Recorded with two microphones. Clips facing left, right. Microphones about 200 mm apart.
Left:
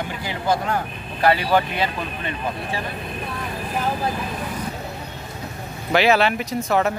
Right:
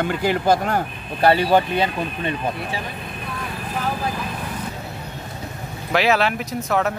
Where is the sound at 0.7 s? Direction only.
30° right (ahead or behind).